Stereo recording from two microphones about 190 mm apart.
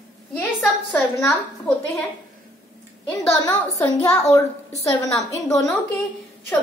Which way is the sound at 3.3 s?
15° left (ahead or behind).